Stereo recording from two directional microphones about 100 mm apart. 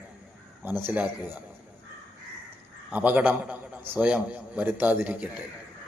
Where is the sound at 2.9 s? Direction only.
15° right (ahead or behind).